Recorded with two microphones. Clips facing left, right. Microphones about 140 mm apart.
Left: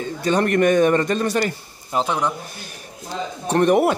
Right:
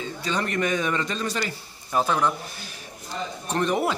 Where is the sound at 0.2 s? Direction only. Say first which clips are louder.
Left 9 dB; 50° left (ahead or behind).